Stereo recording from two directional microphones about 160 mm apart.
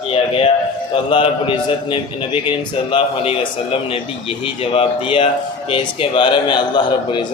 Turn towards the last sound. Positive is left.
turn(degrees=25)  # may be behind; listen again after turning